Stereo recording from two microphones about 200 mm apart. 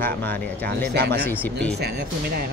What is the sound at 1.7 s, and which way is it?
Speech, 55° right (ahead or behind).